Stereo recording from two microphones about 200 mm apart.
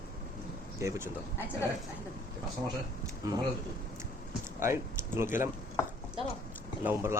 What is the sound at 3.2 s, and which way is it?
Speech, 15° right (ahead or behind).